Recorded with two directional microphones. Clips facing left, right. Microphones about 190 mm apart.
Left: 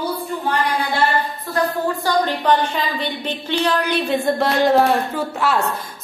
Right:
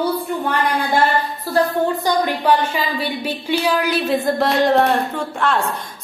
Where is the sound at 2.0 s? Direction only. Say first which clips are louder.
Left 2 dB; 10° right (ahead or behind).